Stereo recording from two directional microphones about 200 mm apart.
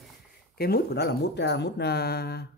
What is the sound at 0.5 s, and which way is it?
Speech, 50° left (ahead or behind).